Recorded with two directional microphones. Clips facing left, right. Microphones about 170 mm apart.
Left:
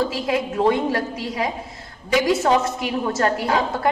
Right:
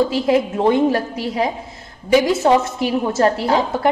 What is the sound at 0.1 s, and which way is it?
A woman's voice, 25° right (ahead or behind).